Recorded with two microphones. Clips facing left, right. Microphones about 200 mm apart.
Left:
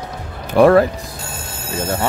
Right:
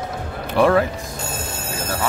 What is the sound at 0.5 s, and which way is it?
Music, 45° left (ahead or behind).